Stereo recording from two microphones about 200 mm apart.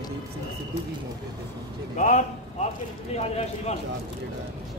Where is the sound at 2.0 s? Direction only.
35° left (ahead or behind).